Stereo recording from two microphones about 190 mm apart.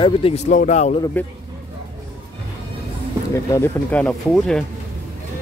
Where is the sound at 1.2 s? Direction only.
10° left (ahead or behind).